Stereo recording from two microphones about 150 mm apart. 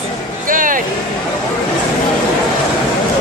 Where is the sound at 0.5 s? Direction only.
65° right (ahead or behind).